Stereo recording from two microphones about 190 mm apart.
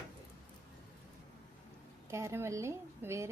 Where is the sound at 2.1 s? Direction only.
15° right (ahead or behind).